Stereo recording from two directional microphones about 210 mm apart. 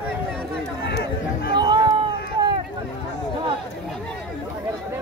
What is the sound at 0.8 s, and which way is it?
Run, 50° left (ahead or behind).